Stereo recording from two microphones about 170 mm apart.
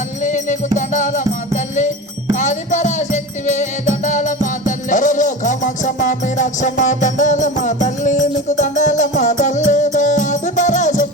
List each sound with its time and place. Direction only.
0.2 s music: 45° left (ahead or behind)